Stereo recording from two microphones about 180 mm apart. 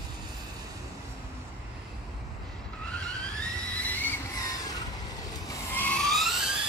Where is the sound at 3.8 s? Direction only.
10° left (ahead or behind).